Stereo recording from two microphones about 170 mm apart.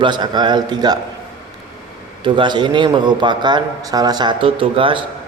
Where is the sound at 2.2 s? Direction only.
25° right (ahead or behind).